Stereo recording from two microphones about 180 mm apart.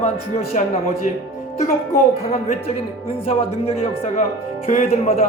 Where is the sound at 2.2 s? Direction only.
35° left (ahead or behind).